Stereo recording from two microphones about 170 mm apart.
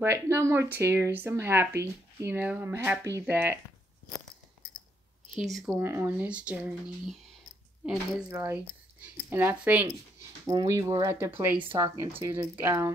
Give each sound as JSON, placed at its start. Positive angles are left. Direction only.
{"t": 0.0, "sound": "speech", "side_deg": -15}
{"t": 5.3, "sound": "speech", "side_deg": 0}
{"t": 5.8, "sound": "speech", "side_deg": -15}
{"t": 8.3, "sound": "speech", "side_deg": -15}
{"t": 10.4, "sound": "speech", "side_deg": -20}